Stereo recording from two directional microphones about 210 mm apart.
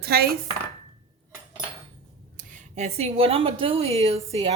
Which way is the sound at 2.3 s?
35° right (ahead or behind).